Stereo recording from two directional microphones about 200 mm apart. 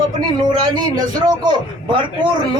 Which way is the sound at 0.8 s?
20° right (ahead or behind).